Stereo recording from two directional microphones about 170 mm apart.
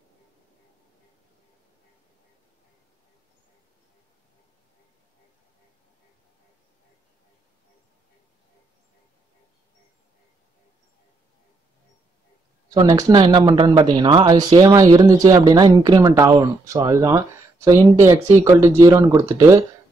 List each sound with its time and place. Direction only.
12.6 s speech: 20° right (ahead or behind)